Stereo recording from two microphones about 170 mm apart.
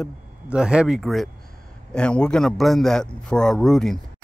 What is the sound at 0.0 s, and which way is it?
Speech, 5° right (ahead or behind).